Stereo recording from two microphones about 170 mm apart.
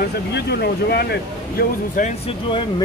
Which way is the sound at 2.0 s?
50° left (ahead or behind).